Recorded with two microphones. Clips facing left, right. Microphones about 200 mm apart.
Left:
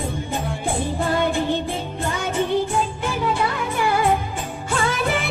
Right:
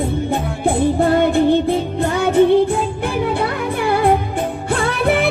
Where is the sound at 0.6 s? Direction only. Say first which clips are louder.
Right 10 dB; 60° right (ahead or behind).